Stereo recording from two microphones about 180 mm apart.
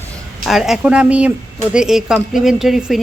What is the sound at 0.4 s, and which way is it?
Speech, centre (ahead or behind).